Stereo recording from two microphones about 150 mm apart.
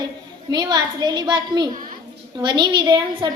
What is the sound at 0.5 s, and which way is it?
A child's voice, 30° right (ahead or behind).